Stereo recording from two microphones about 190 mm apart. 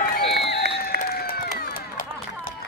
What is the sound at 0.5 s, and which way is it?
Run, 55° left (ahead or behind).